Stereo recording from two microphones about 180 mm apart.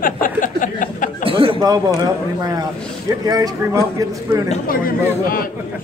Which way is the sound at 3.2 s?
20° right (ahead or behind).